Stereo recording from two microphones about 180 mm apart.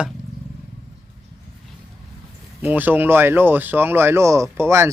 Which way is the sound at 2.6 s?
10° right (ahead or behind).